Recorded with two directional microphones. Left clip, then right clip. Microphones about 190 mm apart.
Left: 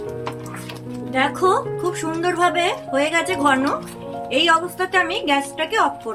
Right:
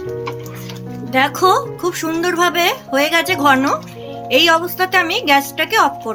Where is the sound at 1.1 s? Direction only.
35° right (ahead or behind).